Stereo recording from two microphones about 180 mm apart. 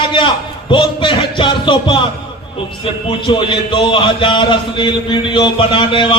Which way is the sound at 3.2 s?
25° left (ahead or behind).